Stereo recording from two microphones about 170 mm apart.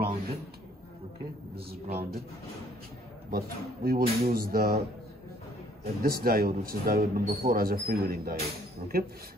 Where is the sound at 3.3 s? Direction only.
60° right (ahead or behind).